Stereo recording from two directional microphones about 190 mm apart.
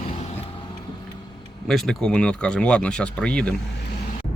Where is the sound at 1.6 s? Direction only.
Centre (ahead or behind).